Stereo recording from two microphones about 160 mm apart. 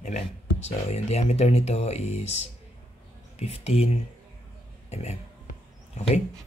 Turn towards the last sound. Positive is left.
turn(degrees=45)  # may be behind; listen again after turning